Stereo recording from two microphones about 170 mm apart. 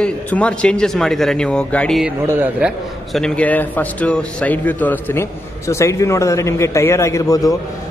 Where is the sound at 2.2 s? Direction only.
10° right (ahead or behind).